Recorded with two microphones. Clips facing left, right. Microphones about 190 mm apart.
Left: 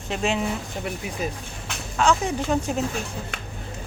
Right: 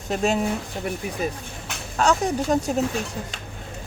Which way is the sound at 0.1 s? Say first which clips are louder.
Right 3 dB; 40° right (ahead or behind).